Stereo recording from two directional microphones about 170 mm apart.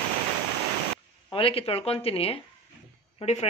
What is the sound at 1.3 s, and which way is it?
Speech, 35° left (ahead or behind).